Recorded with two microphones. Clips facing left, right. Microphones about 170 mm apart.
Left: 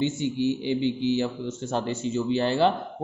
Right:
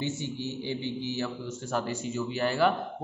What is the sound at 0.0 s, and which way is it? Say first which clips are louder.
A man's voice: left 8 dB; 15° left (ahead or behind).